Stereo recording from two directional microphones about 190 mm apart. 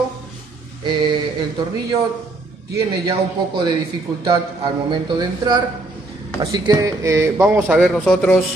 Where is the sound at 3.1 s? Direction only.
25° right (ahead or behind).